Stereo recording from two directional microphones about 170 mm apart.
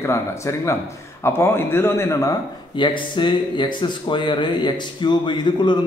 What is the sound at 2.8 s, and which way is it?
Speech, 30° left (ahead or behind).